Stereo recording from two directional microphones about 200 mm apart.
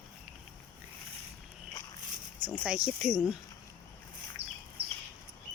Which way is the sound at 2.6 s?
5° right (ahead or behind).